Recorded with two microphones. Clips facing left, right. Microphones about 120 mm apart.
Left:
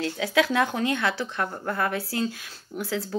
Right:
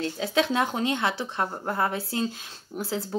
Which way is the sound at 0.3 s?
25° right (ahead or behind).